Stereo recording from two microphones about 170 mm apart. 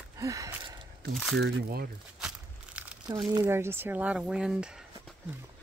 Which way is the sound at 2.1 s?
5° right (ahead or behind).